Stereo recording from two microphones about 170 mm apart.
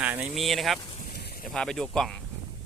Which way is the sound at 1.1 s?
70° left (ahead or behind).